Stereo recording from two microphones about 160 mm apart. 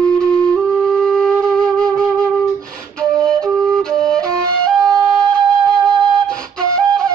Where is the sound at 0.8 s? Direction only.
5° left (ahead or behind).